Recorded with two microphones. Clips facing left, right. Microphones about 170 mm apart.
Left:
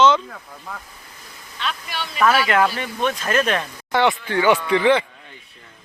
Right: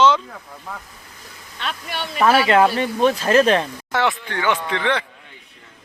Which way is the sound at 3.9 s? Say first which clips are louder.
Left 3 dB; centre (ahead or behind).